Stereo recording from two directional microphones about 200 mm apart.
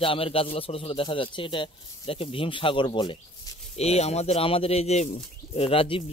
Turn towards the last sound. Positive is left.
turn(degrees=30)  # may be behind; listen again after turning